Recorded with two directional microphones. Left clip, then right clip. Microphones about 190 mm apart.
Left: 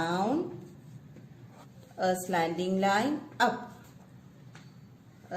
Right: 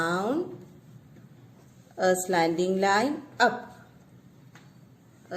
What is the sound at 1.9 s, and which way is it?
A woman's voice, 55° right (ahead or behind).